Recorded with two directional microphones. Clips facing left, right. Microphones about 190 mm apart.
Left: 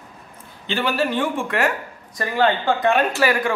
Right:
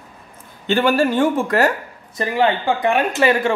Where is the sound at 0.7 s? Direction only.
50° right (ahead or behind).